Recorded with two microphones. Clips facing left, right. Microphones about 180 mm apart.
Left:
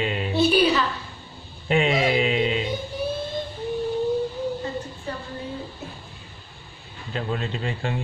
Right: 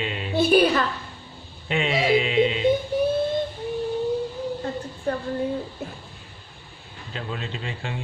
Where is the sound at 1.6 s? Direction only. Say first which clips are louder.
Left 2 dB; 45° left (ahead or behind).